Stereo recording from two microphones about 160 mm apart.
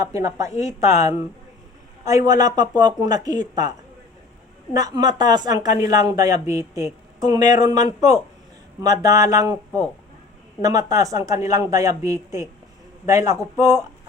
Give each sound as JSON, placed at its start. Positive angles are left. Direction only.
{"t": 0.0, "sound": "a woman's voice", "side_deg": -20}
{"t": 10.6, "sound": "a woman's voice", "side_deg": -20}